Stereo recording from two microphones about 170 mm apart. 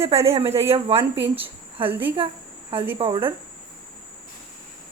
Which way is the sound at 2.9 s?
30° right (ahead or behind).